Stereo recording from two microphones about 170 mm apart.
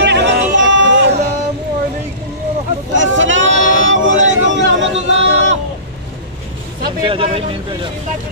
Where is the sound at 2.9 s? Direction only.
90° right.